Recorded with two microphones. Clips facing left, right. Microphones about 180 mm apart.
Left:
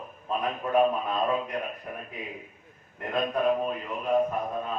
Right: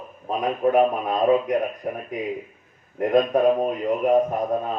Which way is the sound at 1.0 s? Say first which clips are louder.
Right 8 dB; 45° right (ahead or behind).